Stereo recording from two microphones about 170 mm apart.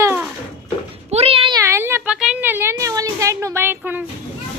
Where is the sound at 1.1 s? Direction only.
35° right (ahead or behind).